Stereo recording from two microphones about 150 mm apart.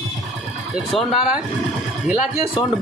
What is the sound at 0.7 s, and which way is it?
Speech, 5° right (ahead or behind).